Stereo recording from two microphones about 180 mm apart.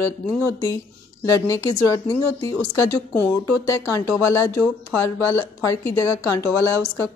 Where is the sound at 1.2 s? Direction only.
20° left (ahead or behind).